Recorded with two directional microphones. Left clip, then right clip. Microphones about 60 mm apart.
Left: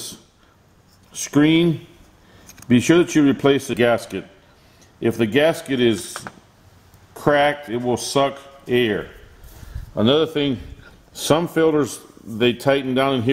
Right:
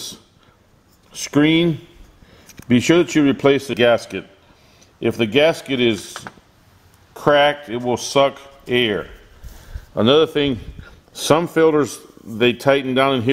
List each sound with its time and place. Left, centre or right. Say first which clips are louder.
1.1 s speech: right 1 dB; right
2.7 s speech: right 1 dB; right
7.2 s a man's voice: right 3 dB; right